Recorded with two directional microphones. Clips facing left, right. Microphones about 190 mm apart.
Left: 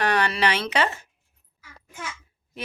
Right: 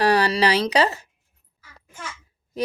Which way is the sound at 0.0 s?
35° right (ahead or behind).